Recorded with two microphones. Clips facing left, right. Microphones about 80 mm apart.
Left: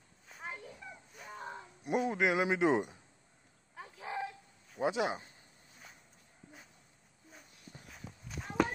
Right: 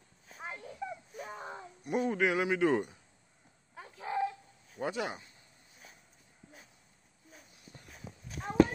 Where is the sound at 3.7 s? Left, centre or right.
Centre.